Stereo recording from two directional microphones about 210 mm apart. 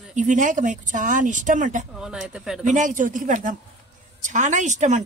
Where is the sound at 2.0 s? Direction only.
5° right (ahead or behind).